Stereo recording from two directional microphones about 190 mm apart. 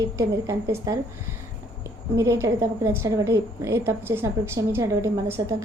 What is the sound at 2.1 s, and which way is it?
A woman's voice, 15° right (ahead or behind).